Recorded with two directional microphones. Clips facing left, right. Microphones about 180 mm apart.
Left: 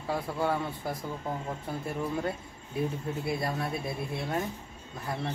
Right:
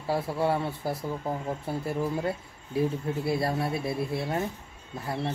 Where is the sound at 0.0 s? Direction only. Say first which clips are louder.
Right 3 dB; 30° right (ahead or behind).